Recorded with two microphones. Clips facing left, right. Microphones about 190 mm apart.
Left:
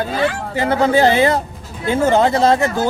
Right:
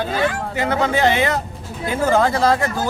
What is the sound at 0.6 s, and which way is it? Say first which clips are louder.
Speech: left 5 dB; 30° left (ahead or behind).